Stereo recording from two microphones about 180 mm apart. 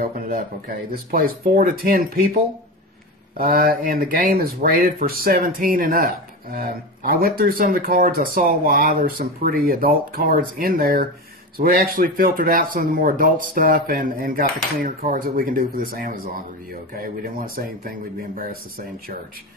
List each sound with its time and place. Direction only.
0.0 s speech: 55° right (ahead or behind)